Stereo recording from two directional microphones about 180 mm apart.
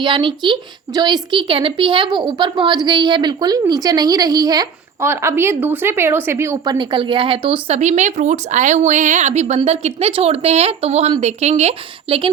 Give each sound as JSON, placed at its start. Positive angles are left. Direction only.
{"t": 0.0, "sound": "a woman's voice", "side_deg": -25}